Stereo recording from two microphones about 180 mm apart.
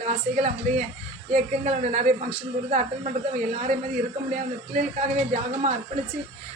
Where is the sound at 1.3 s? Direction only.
40° right (ahead or behind).